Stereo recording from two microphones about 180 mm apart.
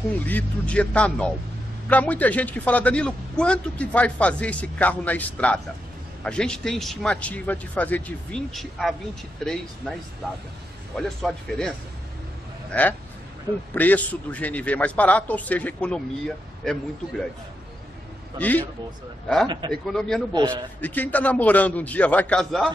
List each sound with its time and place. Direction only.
0.2 s a man's voice: 10° left (ahead or behind)
11.0 s speech: 5° left (ahead or behind)
13.7 s a man's voice: 10° left (ahead or behind)
18.4 s a man's voice: 10° left (ahead or behind)
19.4 s a man's voice: 25° right (ahead or behind)
19.7 s speech: 5° left (ahead or behind)
20.3 s a man's voice: 25° right (ahead or behind)
20.8 s a man's voice: 10° left (ahead or behind)